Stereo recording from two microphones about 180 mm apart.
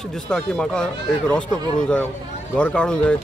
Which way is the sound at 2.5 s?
5° left (ahead or behind).